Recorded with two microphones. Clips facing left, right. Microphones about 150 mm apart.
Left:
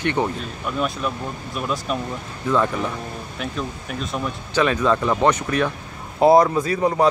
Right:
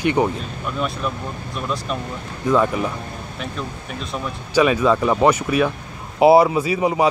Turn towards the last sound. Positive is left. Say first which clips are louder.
# even
turn(degrees=-10)  # may be behind; listen again after turning